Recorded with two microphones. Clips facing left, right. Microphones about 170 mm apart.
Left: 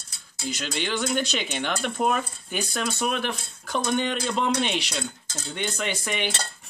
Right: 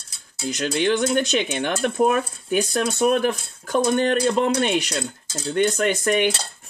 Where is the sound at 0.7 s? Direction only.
55° right (ahead or behind).